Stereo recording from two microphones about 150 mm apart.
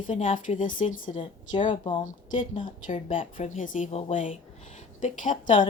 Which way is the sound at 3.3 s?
60° left (ahead or behind).